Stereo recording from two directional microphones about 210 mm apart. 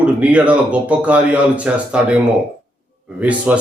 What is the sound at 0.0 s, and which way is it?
A man's voice, 5° right (ahead or behind).